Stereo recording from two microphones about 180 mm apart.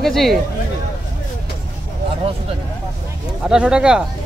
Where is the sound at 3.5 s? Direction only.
5° right (ahead or behind).